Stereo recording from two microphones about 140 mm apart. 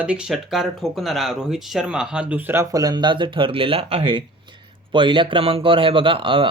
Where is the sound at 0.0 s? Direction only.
5° right (ahead or behind).